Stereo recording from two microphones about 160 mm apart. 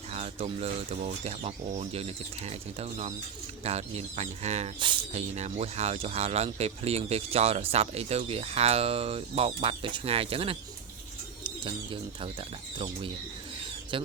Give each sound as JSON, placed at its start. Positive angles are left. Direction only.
{"t": 0.1, "sound": "speech", "side_deg": -40}
{"t": 4.8, "sound": "speech", "side_deg": -30}
{"t": 5.3, "sound": "speech", "side_deg": -45}
{"t": 13.9, "sound": "speech", "side_deg": -30}